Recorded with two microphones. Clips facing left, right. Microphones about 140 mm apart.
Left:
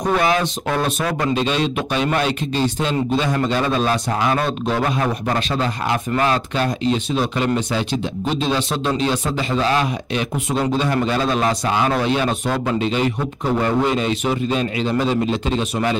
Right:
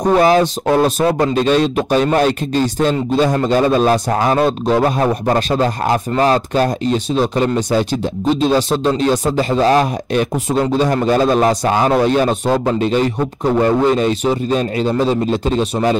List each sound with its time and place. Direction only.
0.1 s a man's voice: 35° right (ahead or behind)
1.3 s a man's voice: 45° right (ahead or behind)